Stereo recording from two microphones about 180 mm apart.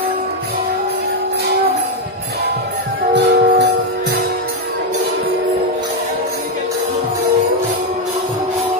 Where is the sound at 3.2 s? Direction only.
65° right (ahead or behind).